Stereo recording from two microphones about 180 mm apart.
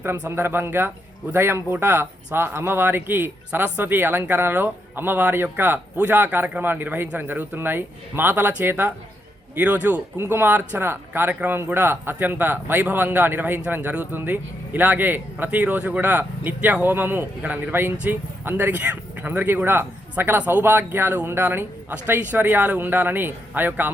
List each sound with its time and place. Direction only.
0.0 s speech: 15° right (ahead or behind)